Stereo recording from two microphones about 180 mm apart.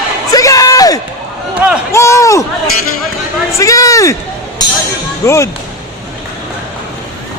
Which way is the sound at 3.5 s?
15° left (ahead or behind).